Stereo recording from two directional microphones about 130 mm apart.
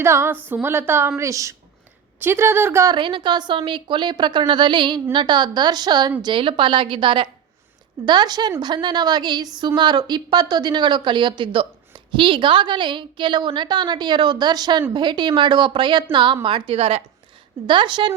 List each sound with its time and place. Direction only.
0.0 s a woman's voice: 20° right (ahead or behind)
2.9 s a woman's voice: 40° right (ahead or behind)
17.7 s a woman's voice: 40° right (ahead or behind)